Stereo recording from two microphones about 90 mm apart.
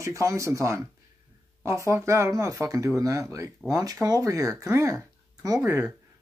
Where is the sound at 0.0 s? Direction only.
35° right (ahead or behind).